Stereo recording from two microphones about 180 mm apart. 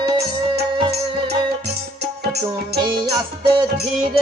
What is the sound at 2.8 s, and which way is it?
Music, 25° right (ahead or behind).